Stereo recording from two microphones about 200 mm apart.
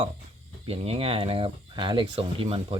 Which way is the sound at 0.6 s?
30° right (ahead or behind).